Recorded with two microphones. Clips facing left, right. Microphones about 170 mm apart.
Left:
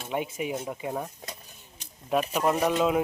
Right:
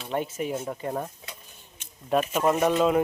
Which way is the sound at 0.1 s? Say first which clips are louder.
Right 2 dB; 10° left (ahead or behind).